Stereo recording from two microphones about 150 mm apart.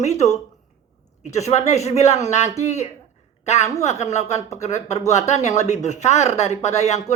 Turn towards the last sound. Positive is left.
turn(degrees=50)  # may be behind; listen again after turning